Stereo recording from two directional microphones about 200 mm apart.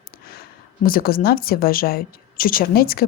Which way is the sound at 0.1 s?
50° left (ahead or behind).